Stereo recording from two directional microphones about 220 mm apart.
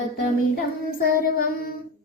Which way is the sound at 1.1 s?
40° left (ahead or behind).